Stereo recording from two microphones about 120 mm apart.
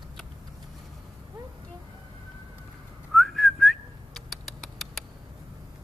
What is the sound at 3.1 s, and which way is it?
Whistling, centre (ahead or behind).